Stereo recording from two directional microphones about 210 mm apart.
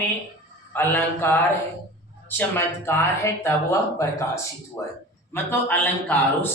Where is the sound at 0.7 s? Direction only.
10° left (ahead or behind).